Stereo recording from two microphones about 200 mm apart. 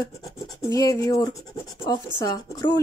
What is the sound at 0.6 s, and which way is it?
Speech, 15° left (ahead or behind).